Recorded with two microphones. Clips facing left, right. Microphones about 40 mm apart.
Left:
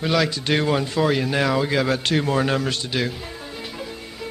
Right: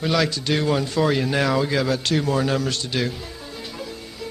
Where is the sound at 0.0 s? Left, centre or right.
Centre.